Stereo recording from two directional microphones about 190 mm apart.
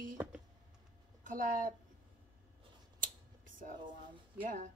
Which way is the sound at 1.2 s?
45° right (ahead or behind).